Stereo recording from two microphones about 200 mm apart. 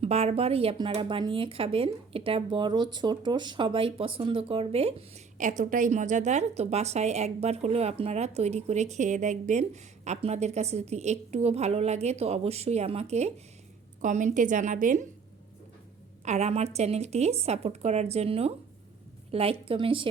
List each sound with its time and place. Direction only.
0.0 s a woman's voice: 30° right (ahead or behind)
16.2 s a woman's voice: 35° right (ahead or behind)